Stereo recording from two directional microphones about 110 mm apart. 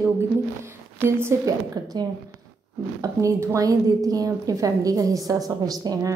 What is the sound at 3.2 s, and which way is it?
A woman's voice, 30° right (ahead or behind).